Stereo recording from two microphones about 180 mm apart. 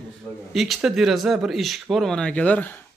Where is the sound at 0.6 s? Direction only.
Centre (ahead or behind).